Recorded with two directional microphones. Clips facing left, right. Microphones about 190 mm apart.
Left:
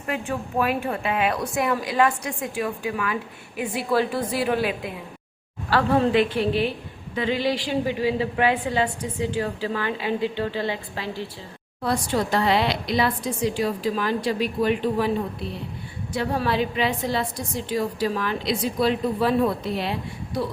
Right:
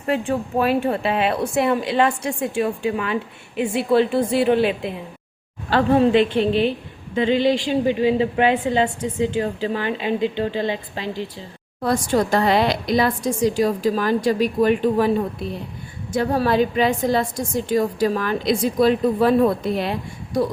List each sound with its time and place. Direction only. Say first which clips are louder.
0.1 s a woman's voice: right 6 dB; 30° right (ahead or behind)
11.8 s a woman's voice: right 4 dB; 45° right (ahead or behind)
16.1 s a woman's voice: right 5 dB; 45° right (ahead or behind)